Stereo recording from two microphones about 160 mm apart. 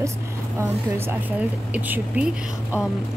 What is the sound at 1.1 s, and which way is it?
Speech, 10° right (ahead or behind).